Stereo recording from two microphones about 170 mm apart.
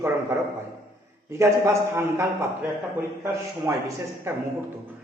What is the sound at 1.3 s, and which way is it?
Speech, 15° right (ahead or behind).